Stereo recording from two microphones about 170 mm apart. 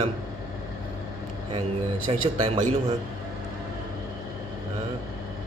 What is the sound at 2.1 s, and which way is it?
Mantra, 30° right (ahead or behind).